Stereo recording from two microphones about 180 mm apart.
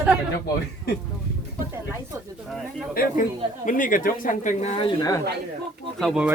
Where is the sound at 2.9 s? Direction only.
55° left (ahead or behind).